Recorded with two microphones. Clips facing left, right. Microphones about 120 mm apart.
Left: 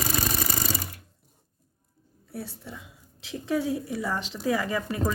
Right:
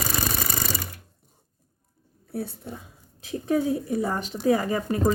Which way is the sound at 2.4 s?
55° right (ahead or behind).